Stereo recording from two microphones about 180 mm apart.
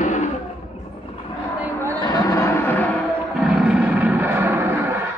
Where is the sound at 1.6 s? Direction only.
15° right (ahead or behind).